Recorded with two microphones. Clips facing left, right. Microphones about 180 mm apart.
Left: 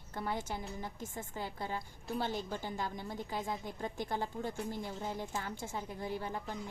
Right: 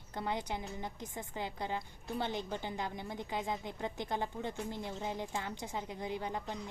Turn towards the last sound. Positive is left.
turn(degrees=-20)  # may be behind; listen again after turning